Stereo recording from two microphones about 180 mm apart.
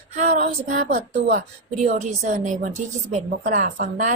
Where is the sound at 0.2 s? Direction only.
50° right (ahead or behind).